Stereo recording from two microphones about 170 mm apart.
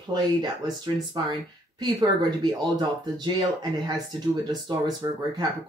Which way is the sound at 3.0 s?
25° right (ahead or behind).